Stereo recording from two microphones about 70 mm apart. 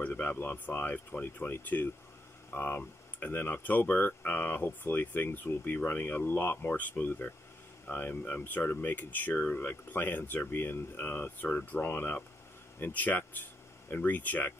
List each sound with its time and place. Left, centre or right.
0.0 s speech: left